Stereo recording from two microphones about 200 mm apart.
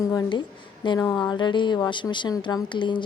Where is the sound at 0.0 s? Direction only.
20° left (ahead or behind).